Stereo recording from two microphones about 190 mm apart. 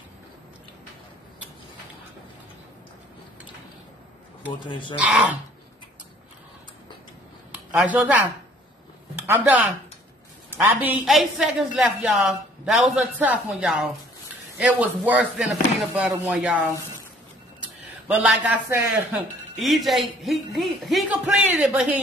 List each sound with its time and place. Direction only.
4.6 s speech: 25° left (ahead or behind)
4.9 s speech: 5° right (ahead or behind)
7.5 s speech: 5° right (ahead or behind)
18.0 s speech: 5° right (ahead or behind)